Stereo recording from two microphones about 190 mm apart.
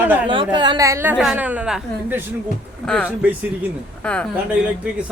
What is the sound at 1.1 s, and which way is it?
Speech, centre (ahead or behind).